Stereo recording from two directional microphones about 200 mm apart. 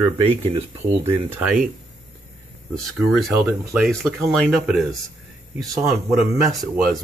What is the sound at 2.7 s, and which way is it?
Speech, centre (ahead or behind).